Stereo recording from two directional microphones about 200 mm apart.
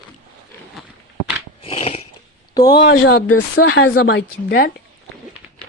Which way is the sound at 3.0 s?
70° left (ahead or behind).